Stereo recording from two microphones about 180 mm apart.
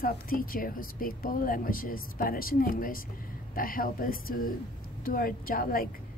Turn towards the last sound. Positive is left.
turn(degrees=50)  # may be behind; listen again after turning